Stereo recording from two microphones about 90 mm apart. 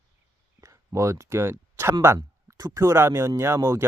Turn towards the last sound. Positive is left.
turn(degrees=-30)  # may be behind; listen again after turning